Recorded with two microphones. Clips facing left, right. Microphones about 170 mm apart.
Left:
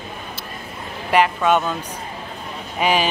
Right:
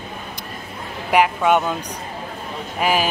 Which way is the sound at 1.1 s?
10° right (ahead or behind).